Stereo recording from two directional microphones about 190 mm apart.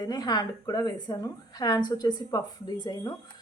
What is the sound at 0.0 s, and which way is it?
A woman's voice, 20° left (ahead or behind).